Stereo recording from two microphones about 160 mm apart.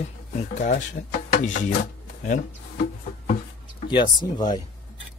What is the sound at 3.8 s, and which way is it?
Speech, 30° left (ahead or behind).